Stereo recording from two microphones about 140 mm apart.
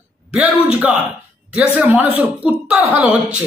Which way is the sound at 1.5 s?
5° right (ahead or behind).